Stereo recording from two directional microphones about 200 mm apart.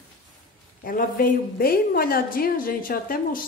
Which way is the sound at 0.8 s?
45° left (ahead or behind).